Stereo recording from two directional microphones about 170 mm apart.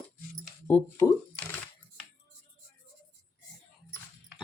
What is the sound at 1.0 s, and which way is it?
Speech, 20° left (ahead or behind).